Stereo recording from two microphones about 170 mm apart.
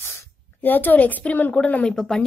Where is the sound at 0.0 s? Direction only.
15° left (ahead or behind).